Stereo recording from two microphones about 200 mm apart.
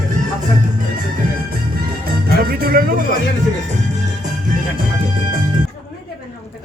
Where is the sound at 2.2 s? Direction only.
50° right (ahead or behind).